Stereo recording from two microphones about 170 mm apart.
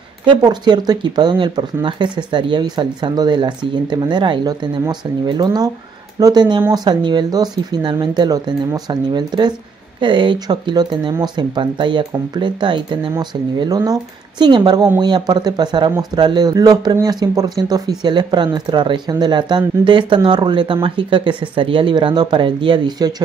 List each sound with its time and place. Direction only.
0.2 s speech: 25° right (ahead or behind)